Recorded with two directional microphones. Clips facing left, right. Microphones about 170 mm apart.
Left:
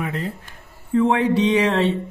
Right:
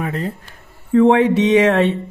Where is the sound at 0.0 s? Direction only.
40° right (ahead or behind).